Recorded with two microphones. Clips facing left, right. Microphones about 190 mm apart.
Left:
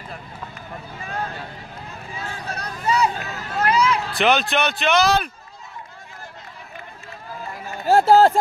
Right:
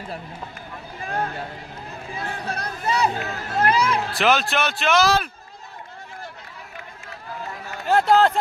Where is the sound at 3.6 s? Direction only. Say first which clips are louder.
Left 1 dB; 55° right (ahead or behind).